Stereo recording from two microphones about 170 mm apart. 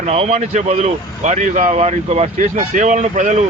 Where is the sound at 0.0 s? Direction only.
40° right (ahead or behind).